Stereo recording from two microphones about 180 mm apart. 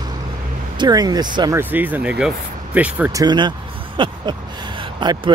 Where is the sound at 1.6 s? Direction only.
10° right (ahead or behind).